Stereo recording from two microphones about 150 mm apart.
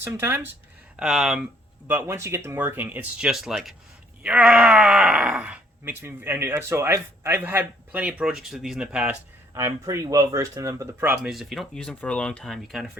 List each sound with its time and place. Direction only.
0.0 s speech: 15° right (ahead or behind)
0.9 s speech: 5° right (ahead or behind)
1.9 s speech: 15° right (ahead or behind)
9.6 s speech: 20° right (ahead or behind); by 12.9 s centre (ahead or behind)